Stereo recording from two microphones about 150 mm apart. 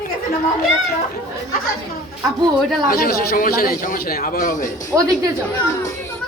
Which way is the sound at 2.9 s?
80° left.